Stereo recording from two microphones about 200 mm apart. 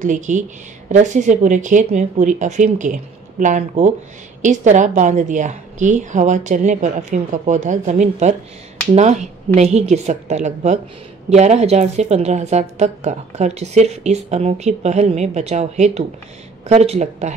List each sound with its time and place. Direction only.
0.0 s a woman's voice: 40° right (ahead or behind)